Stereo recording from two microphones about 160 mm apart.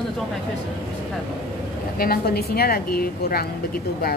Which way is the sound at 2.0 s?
70° left (ahead or behind).